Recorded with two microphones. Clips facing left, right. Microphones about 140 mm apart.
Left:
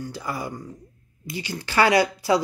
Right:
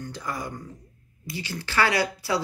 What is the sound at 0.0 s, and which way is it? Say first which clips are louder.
Speech: left 2 dB; 5° left (ahead or behind).